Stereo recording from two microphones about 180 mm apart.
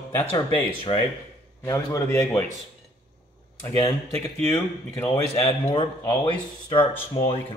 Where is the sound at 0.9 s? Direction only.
30° left (ahead or behind).